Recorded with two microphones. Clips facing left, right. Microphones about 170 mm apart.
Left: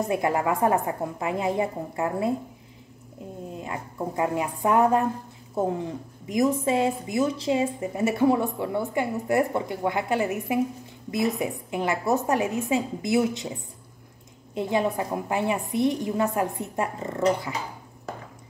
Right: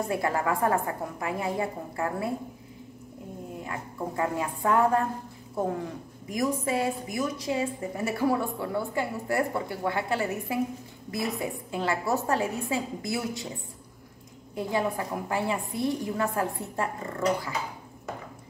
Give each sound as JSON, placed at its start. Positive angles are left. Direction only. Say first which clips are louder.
{"t": 0.1, "sound": "a woman's voice", "louder": "left 3 dB", "side_deg": 20}
{"t": 3.5, "sound": "a woman's voice", "louder": "left 3 dB", "side_deg": 20}
{"t": 14.5, "sound": "a woman's voice", "louder": "left 3 dB", "side_deg": 20}